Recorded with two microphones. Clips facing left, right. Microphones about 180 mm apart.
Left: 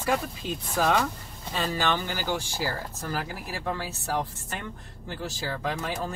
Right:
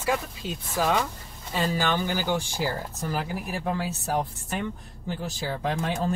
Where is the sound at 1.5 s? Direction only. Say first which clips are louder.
Right 2 dB; 10° right (ahead or behind).